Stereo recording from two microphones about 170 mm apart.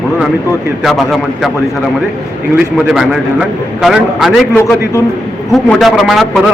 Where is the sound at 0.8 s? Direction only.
Centre (ahead or behind).